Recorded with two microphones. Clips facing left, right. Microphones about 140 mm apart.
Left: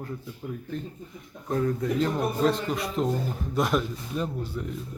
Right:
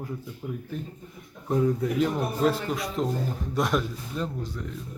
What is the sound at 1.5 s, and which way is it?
A man's voice, 10° right (ahead or behind).